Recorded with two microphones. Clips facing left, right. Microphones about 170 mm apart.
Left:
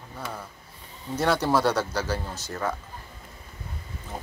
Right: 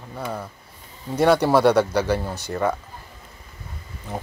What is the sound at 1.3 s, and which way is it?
Speech, 60° right (ahead or behind).